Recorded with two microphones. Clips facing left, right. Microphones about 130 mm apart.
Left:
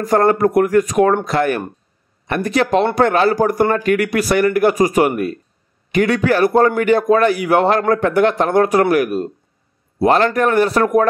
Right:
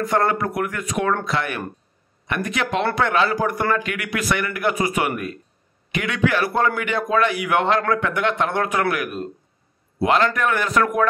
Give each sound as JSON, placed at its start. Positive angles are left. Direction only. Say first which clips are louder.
{"t": 0.0, "sound": "speech", "louder": "left 7 dB", "side_deg": 40}